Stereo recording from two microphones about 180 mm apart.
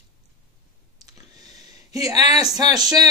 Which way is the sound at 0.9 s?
20° right (ahead or behind).